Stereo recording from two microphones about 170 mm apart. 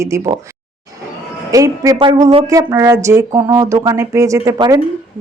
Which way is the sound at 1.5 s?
20° right (ahead or behind).